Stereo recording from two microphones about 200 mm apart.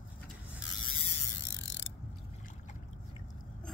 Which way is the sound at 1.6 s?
65° left (ahead or behind).